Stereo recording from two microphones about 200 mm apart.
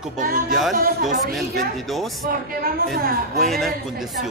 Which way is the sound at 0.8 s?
45° right (ahead or behind).